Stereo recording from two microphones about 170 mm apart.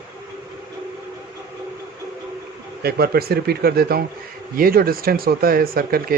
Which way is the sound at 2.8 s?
65° right (ahead or behind).